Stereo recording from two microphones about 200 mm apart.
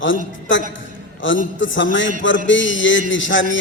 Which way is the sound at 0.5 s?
70° left (ahead or behind).